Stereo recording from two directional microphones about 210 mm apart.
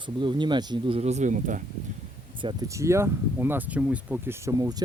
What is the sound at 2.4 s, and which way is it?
Speech, 20° right (ahead or behind).